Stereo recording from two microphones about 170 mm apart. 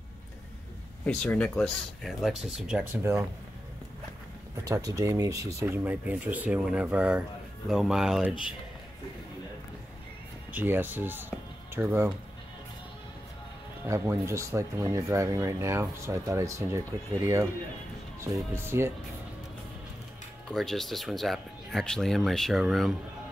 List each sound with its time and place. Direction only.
1.0 s speech: 5° left (ahead or behind); by 3.3 s 15° right (ahead or behind)
4.6 s speech: 20° right (ahead or behind); by 8.4 s 5° right (ahead or behind)
10.5 s speech: 10° right (ahead or behind)
13.8 s speech: 15° right (ahead or behind)
18.3 s speech: 15° right (ahead or behind)
20.5 s speech: centre (ahead or behind)